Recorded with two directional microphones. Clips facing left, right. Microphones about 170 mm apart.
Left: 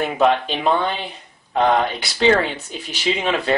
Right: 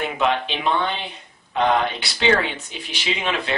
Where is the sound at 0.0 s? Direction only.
40° left (ahead or behind).